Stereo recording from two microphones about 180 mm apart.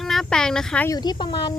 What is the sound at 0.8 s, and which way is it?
Speech, 20° left (ahead or behind).